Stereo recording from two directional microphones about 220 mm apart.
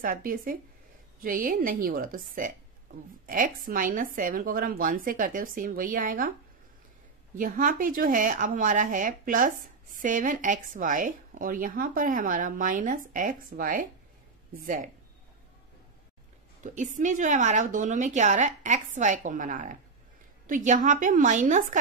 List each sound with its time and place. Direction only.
0.0 s speech: 40° right (ahead or behind)
7.3 s speech: 40° right (ahead or behind)
16.6 s speech: 35° right (ahead or behind)